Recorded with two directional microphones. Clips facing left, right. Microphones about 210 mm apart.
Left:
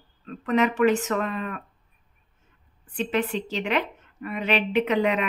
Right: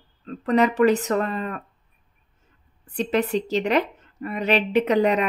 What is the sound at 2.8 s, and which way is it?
Speech, 40° right (ahead or behind).